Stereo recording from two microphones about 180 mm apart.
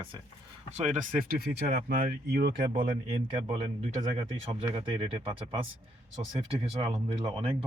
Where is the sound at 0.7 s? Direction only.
40° right (ahead or behind); by 2.5 s 60° right (ahead or behind).